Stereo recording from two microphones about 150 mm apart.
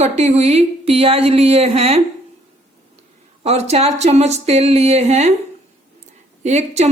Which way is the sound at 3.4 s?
45° right (ahead or behind).